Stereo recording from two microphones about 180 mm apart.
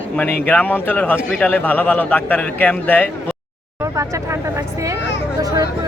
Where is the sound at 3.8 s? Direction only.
15° right (ahead or behind).